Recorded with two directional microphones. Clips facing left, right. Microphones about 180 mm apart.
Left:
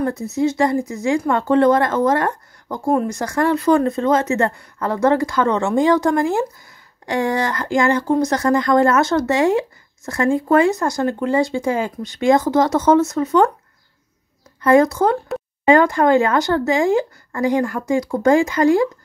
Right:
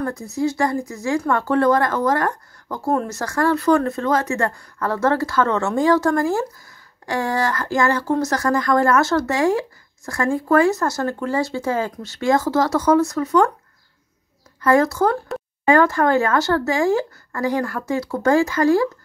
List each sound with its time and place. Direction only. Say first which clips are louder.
0.0 s speech: left 3 dB; 20° left (ahead or behind)
14.6 s speech: left 3 dB; 20° left (ahead or behind)